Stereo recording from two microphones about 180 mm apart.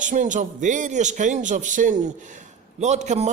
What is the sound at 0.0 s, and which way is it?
A man's voice, 45° right (ahead or behind).